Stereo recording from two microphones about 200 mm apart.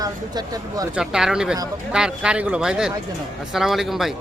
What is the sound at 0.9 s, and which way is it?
A man's voice, 5° right (ahead or behind).